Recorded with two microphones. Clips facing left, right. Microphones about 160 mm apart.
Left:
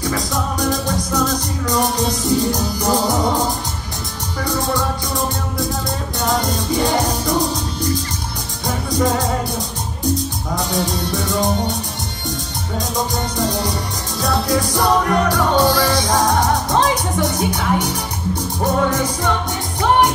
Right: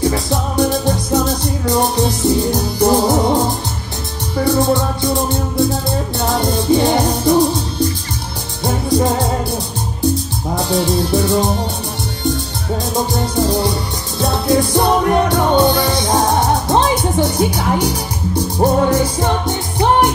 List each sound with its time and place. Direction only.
0.0 s music: 30° right (ahead or behind)
6.2 s music: 30° right (ahead or behind)
10.5 s music: 30° right (ahead or behind)
12.9 s music: 30° right (ahead or behind)